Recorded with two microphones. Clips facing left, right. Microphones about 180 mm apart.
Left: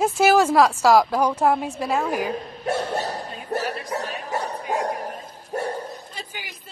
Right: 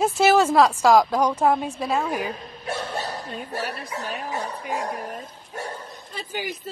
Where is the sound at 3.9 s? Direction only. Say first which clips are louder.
Left 2 dB; 45° left (ahead or behind).